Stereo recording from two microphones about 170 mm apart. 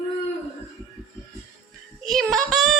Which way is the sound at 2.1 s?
Centre (ahead or behind).